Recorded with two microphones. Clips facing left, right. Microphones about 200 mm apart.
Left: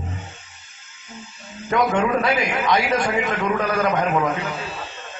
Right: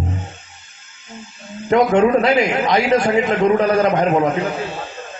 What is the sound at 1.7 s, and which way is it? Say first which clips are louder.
A man's voice: right 6 dB; 25° right (ahead or behind).